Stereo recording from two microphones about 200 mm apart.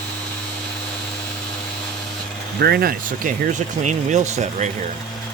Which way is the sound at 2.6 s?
50° right (ahead or behind).